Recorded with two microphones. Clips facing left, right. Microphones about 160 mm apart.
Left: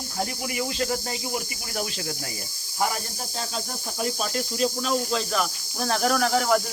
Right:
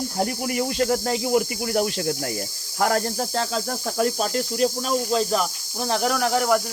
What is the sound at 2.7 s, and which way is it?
Cricket, 85° right.